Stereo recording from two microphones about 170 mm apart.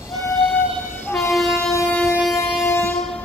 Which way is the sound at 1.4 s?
Centre (ahead or behind).